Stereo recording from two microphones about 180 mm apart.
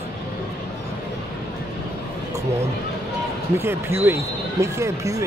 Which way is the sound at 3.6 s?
10° right (ahead or behind).